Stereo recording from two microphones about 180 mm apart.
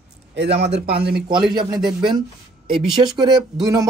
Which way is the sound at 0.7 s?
70° right (ahead or behind).